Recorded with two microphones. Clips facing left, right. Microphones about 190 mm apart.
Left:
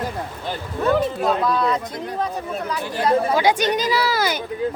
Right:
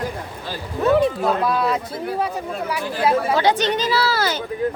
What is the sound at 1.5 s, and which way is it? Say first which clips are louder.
Speech: even; 5° right (ahead or behind).